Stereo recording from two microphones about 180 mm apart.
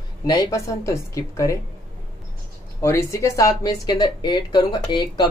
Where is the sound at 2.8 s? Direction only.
15° left (ahead or behind).